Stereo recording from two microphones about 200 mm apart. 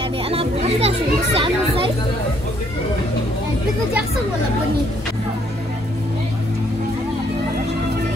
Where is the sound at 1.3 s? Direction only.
25° right (ahead or behind).